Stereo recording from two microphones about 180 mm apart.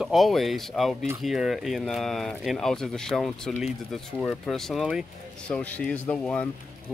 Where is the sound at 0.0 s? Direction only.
Centre (ahead or behind).